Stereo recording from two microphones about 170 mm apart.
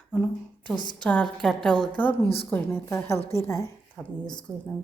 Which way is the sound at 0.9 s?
5° left (ahead or behind).